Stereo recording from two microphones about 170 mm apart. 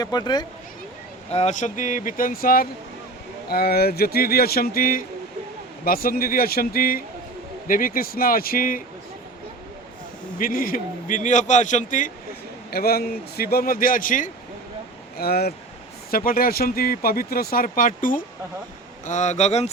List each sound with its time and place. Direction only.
0.0 s speech: 25° left (ahead or behind)
1.3 s speech: 40° left (ahead or behind); by 8.8 s 55° left (ahead or behind)
10.3 s speech: 55° left (ahead or behind)
12.7 s speech: 65° left (ahead or behind)
15.2 s speech: 65° left (ahead or behind); by 19.7 s 40° left (ahead or behind)